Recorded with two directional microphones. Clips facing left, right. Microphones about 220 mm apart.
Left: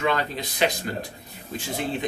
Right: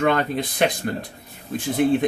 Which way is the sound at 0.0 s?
50° right (ahead or behind).